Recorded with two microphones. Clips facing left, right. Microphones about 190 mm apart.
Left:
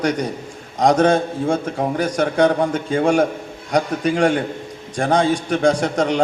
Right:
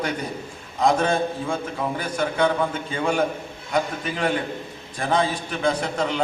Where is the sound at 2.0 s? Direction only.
85° left.